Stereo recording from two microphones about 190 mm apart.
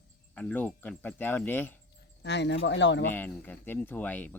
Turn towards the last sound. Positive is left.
turn(degrees=10)  # may be behind; listen again after turning